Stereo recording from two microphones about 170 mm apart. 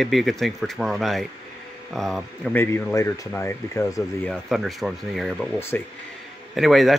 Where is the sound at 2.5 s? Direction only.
15° left (ahead or behind).